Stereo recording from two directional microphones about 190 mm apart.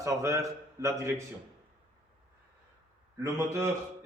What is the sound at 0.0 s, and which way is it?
A man's voice, 15° right (ahead or behind).